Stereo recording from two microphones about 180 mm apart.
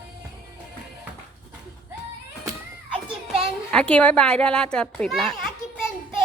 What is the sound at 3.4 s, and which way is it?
A child's voice, 5° left (ahead or behind).